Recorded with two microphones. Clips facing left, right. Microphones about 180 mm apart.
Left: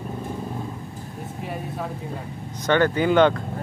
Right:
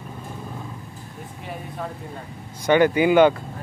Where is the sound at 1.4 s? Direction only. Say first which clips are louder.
Left 2 dB; centre (ahead or behind).